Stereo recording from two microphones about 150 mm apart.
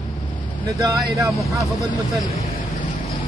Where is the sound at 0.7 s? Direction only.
25° right (ahead or behind).